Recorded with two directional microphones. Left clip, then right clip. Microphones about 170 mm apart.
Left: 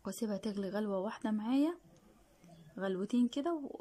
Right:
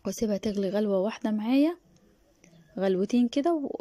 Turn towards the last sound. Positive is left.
turn(degrees=-20)  # may be behind; listen again after turning